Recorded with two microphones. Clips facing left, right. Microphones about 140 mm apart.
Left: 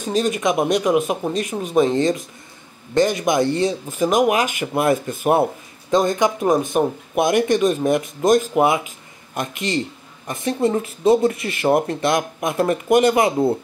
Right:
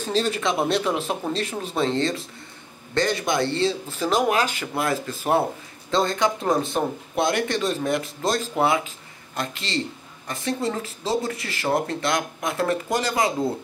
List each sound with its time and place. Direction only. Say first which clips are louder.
0.0 s speech: left 4 dB; 15° left (ahead or behind)